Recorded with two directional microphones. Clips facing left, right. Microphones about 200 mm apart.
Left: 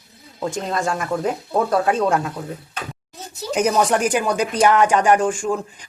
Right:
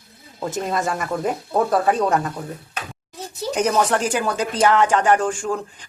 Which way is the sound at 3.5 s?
10° left (ahead or behind).